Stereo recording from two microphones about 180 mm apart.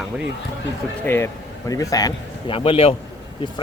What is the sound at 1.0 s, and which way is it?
Speech, 15° left (ahead or behind).